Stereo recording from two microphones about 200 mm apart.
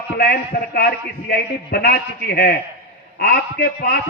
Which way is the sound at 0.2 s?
55° left (ahead or behind).